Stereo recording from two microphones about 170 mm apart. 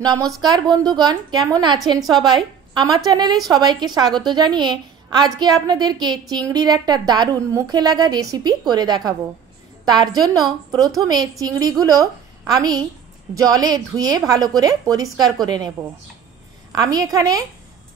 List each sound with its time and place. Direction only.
0.0 s a woman's voice: 20° right (ahead or behind)
16.7 s a woman's voice: 20° right (ahead or behind)